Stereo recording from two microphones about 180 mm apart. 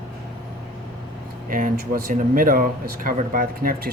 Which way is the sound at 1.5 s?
50° right (ahead or behind).